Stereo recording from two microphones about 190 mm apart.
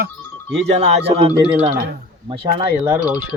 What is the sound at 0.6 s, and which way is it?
Speech, 35° right (ahead or behind).